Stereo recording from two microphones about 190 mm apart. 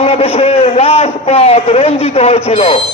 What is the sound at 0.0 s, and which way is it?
A man's voice, 35° left (ahead or behind).